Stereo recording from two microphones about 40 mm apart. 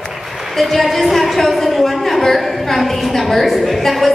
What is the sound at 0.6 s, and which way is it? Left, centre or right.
A woman's voice, centre.